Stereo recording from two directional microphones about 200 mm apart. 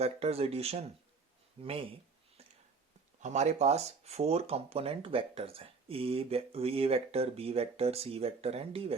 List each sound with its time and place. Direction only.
0.0 s speech: 30° right (ahead or behind)
3.2 s speech: 35° right (ahead or behind)